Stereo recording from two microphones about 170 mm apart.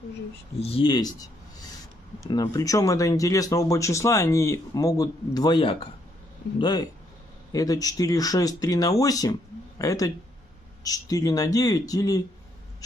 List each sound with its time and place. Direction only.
0.6 s speech: 35° left (ahead or behind)